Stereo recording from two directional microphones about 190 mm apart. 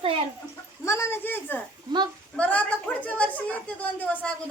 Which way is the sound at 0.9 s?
15° left (ahead or behind).